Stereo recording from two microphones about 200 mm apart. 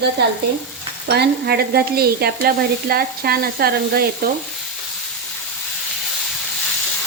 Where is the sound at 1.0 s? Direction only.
55° right (ahead or behind).